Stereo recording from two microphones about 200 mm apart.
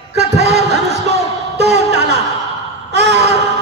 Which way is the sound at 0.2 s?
55° right (ahead or behind).